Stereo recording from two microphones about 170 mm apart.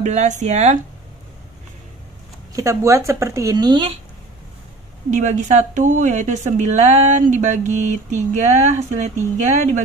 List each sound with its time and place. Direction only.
0.0 s a woman's voice: 45° right (ahead or behind)
2.5 s speech: 20° right (ahead or behind)
5.1 s a woman's voice: 45° right (ahead or behind)